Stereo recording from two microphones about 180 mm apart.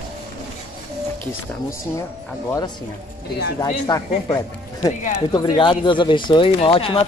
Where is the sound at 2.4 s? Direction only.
20° left (ahead or behind).